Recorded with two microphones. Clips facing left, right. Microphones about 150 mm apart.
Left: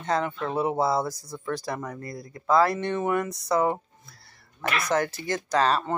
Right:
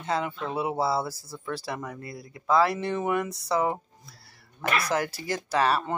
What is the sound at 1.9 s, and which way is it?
Speech, 40° left (ahead or behind).